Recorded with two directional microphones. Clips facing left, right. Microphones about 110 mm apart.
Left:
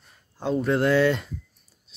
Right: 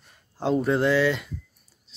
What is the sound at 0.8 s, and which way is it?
Speech, 20° left (ahead or behind).